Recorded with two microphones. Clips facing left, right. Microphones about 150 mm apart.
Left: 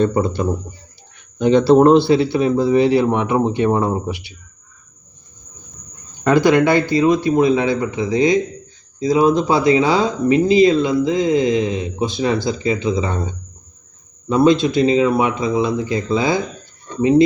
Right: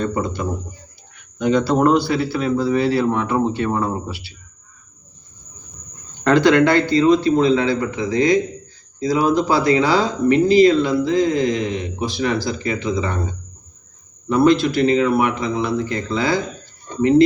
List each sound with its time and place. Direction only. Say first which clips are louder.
0.0 s speech: left 5 dB; 30° left (ahead or behind)
6.2 s speech: even; 10° left (ahead or behind)
14.3 s speech: left 1 dB; 20° left (ahead or behind)